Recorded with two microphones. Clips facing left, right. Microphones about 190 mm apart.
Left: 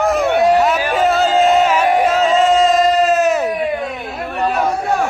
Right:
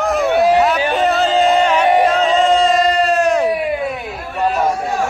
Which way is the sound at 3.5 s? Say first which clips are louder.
Right 1 dB; 10° right (ahead or behind).